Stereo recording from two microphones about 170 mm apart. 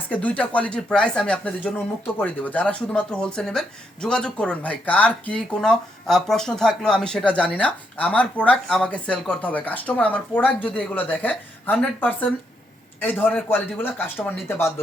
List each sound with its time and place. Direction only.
0.1 s speech: 10° left (ahead or behind)